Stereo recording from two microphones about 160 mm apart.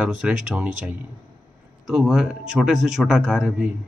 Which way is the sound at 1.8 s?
Centre (ahead or behind).